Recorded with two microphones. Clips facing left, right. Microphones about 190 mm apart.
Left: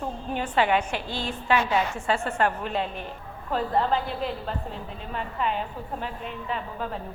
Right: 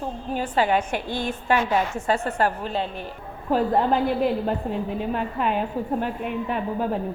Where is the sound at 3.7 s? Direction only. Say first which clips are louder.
Right 4 dB; 55° right (ahead or behind).